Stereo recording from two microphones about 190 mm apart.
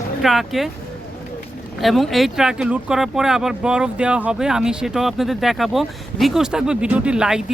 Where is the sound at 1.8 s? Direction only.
Centre (ahead or behind).